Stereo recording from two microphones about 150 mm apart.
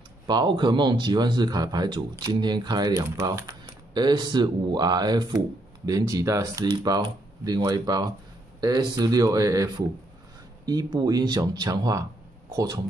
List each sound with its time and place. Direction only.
0.3 s a man's voice: 30° right (ahead or behind)